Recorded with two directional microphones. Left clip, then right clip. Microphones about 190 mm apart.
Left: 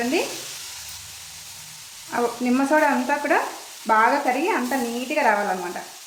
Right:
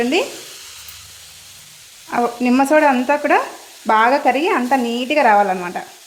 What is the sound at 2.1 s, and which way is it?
Speech, 40° right (ahead or behind).